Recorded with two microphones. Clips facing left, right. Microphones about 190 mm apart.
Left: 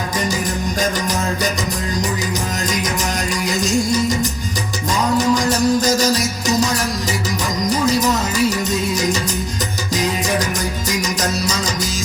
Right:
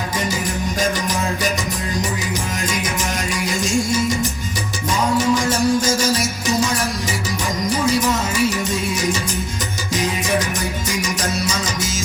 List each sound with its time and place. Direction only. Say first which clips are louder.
5.1 s music: left 2 dB; 40° left (ahead or behind)